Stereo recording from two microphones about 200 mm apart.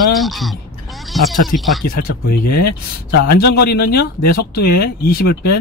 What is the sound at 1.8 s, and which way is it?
A man's voice, 45° left (ahead or behind).